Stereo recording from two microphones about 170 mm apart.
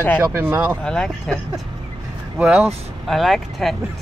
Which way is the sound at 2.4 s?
5° right (ahead or behind).